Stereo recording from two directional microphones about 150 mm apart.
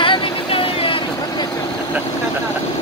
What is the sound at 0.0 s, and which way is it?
Vehicle, 35° left (ahead or behind).